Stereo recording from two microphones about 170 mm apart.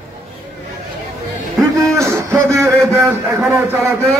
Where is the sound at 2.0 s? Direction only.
15° right (ahead or behind).